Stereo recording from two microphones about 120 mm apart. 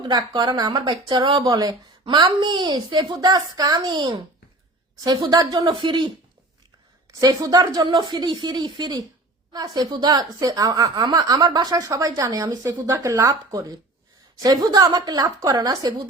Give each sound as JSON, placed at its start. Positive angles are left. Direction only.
{"t": 0.0, "sound": "speech", "side_deg": -35}
{"t": 1.0, "sound": "speech", "side_deg": -45}
{"t": 7.2, "sound": "speech", "side_deg": -35}